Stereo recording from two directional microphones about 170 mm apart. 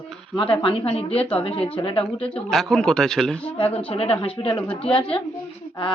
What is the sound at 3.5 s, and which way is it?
A woman's voice, 30° left (ahead or behind).